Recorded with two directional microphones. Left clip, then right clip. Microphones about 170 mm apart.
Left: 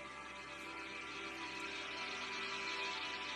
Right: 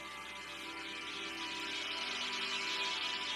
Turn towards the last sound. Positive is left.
turn(degrees=-20)  # may be behind; listen again after turning